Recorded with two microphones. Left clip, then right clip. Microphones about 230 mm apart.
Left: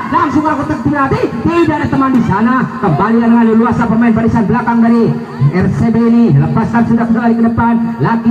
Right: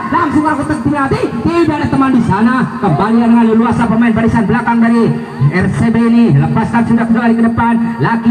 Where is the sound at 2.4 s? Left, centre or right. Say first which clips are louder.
Even; centre.